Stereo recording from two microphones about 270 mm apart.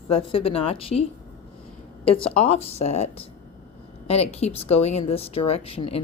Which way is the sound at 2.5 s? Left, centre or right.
Left.